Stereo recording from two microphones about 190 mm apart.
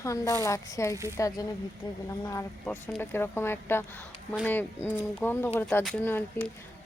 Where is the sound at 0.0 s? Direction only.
15° left (ahead or behind).